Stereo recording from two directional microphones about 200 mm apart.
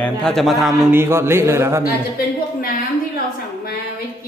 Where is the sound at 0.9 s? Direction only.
10° right (ahead or behind).